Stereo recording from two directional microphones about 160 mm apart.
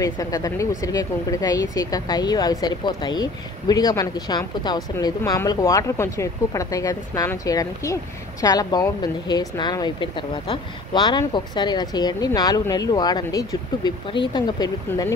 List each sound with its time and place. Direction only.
0.0 s speech: 20° left (ahead or behind)